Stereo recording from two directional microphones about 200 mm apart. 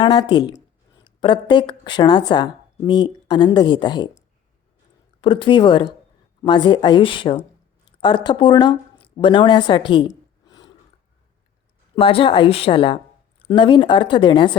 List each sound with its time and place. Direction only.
0.0 s a woman's voice: 25° left (ahead or behind)
5.2 s a woman's voice: 25° left (ahead or behind)
10.4 s a sound: 20° left (ahead or behind)
11.9 s a woman's voice: 30° left (ahead or behind)